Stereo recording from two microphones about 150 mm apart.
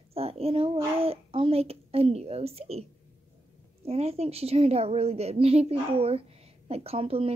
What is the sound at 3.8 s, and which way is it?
A woman's voice, 40° right (ahead or behind).